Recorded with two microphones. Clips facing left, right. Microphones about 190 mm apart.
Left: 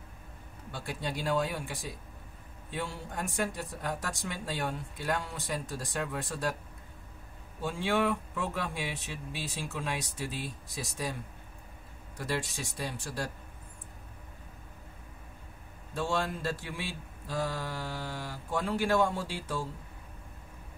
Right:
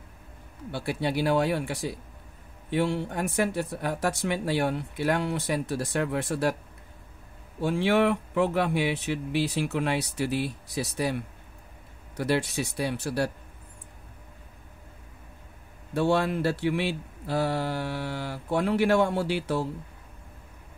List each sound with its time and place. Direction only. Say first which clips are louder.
0.7 s speech: right 8 dB; 70° right (ahead or behind)
7.6 s speech: right 7 dB; 70° right (ahead or behind)
15.9 s speech: right 8 dB; 65° right (ahead or behind)